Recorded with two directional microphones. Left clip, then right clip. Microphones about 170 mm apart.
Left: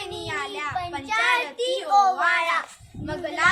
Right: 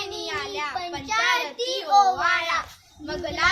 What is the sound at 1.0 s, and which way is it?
Child singing, 15° left (ahead or behind).